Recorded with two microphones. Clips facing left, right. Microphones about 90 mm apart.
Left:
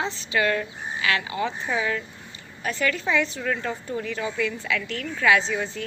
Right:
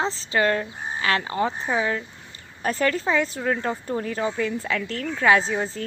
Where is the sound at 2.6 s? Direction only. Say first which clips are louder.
Right 3 dB; 35° right (ahead or behind).